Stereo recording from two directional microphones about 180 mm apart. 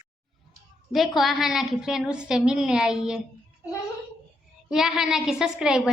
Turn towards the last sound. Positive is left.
turn(degrees=-5)  # may be behind; listen again after turning